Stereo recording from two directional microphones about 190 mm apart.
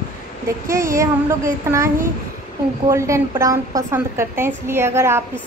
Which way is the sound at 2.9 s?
15° right (ahead or behind).